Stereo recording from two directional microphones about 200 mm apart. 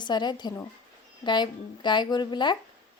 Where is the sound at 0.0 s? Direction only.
20° left (ahead or behind).